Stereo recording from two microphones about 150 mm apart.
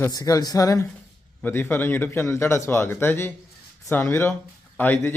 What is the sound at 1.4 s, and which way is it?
A man's voice, 10° left (ahead or behind).